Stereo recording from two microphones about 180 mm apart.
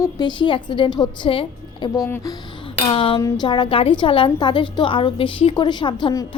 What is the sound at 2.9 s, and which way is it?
A woman's voice, 30° left (ahead or behind).